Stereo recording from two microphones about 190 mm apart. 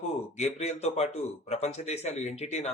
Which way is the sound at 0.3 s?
35° left (ahead or behind).